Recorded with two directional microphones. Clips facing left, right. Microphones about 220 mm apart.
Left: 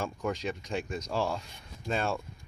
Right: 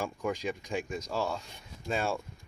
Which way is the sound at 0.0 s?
10° right (ahead or behind).